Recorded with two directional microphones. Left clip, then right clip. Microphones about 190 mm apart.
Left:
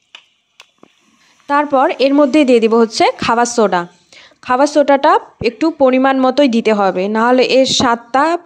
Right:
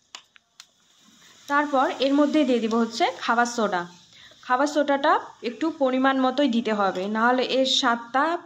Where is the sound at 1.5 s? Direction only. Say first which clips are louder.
Left 9 dB; 50° left (ahead or behind).